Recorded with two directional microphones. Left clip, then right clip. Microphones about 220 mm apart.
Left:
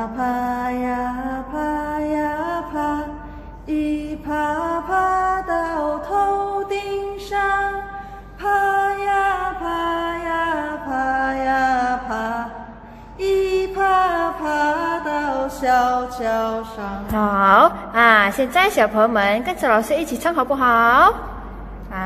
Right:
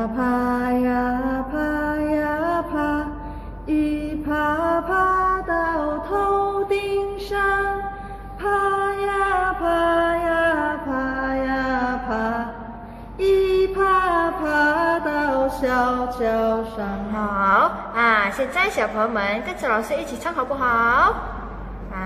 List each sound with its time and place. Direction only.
0.0 s mantra: centre (ahead or behind)
3.6 s music: 5° left (ahead or behind)
8.5 s music: 15° left (ahead or behind); by 10.6 s 5° right (ahead or behind)
10.9 s mantra: 15° left (ahead or behind)
13.2 s a sound: 10° left (ahead or behind)
17.1 s a woman's voice: 45° left (ahead or behind)